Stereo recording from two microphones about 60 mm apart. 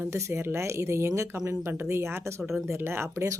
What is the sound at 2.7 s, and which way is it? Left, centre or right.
Speech, right.